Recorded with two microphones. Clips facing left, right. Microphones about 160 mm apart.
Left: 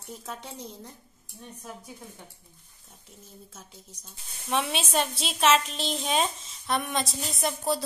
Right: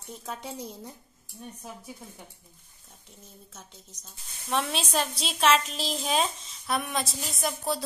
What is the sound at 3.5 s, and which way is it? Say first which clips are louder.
A woman's voice: left 1 dB; 5° left (ahead or behind).